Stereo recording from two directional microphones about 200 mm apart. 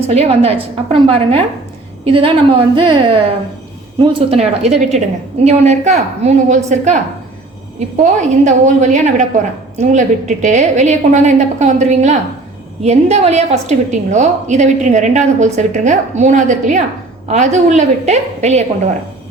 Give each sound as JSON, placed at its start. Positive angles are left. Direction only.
{"t": 0.1, "sound": "a woman's voice", "side_deg": -30}
{"t": 8.0, "sound": "a woman's voice", "side_deg": -35}